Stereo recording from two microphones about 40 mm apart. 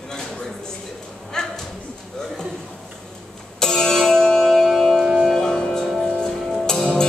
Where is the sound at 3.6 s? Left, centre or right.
Centre.